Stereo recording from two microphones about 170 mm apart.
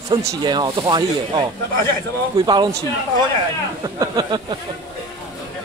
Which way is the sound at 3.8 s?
25° right (ahead or behind).